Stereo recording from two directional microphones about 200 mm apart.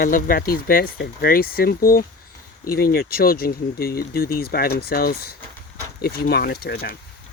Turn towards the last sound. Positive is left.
turn(degrees=50)  # may be behind; listen again after turning